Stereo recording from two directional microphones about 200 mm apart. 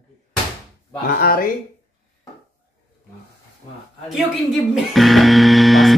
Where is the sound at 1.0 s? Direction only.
45° left (ahead or behind).